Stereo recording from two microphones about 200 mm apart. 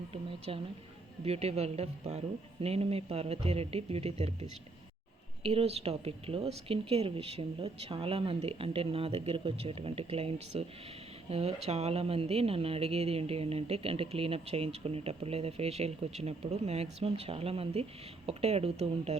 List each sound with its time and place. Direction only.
0.1 s speech: 30° right (ahead or behind)